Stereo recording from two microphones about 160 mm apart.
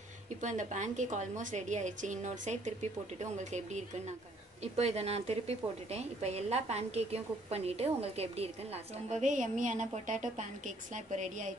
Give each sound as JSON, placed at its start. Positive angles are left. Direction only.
{"t": 0.4, "sound": "a woman's voice", "side_deg": -50}
{"t": 4.7, "sound": "a woman's voice", "side_deg": -40}
{"t": 9.1, "sound": "a woman's voice", "side_deg": -50}